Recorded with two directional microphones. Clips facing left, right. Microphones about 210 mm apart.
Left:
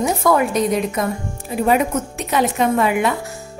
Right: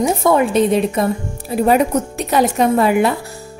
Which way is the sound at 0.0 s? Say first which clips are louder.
Right 2 dB; 25° right (ahead or behind).